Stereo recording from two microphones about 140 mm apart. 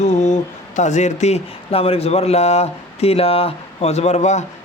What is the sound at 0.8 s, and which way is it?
Speech, 55° left (ahead or behind).